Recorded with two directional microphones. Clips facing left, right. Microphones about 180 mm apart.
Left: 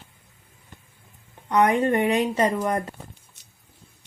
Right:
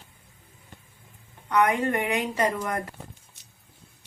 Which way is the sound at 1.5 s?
30° left (ahead or behind).